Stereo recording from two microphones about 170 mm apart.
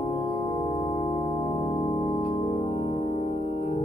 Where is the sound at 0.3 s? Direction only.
25° left (ahead or behind).